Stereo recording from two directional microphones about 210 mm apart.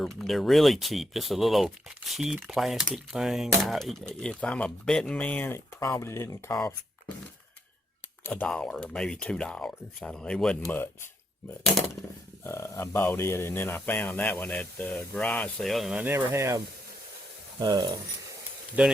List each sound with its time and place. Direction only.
0.0 s speech: centre (ahead or behind)
8.2 s speech: 5° left (ahead or behind)
12.5 s speech: 15° left (ahead or behind); by 16.6 s 10° right (ahead or behind)
17.6 s speech: 20° right (ahead or behind)